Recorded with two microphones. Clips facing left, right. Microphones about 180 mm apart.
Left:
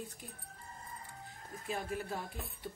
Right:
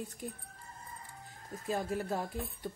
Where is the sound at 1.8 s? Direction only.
45° right (ahead or behind).